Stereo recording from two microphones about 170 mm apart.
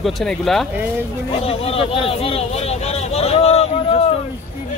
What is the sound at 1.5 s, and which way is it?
Speech, 35° left (ahead or behind).